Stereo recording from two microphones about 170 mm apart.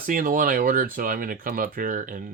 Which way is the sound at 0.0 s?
50° right (ahead or behind).